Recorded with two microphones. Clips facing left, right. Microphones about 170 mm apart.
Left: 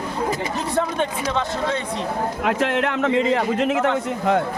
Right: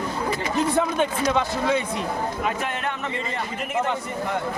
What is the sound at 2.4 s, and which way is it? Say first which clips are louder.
A man's voice: left 6 dB; 85° left.